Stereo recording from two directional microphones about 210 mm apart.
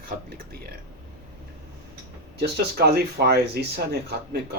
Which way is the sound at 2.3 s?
50° right (ahead or behind).